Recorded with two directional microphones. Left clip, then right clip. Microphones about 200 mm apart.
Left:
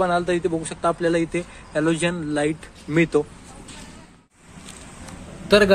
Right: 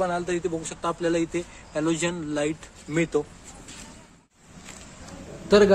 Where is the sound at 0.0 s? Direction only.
5° left (ahead or behind).